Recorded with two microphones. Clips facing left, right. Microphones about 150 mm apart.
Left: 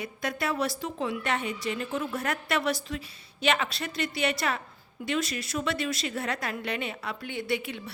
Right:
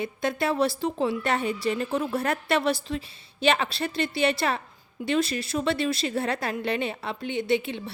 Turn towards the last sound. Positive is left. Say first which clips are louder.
# right 6 dB
turn(degrees=-25)  # may be behind; listen again after turning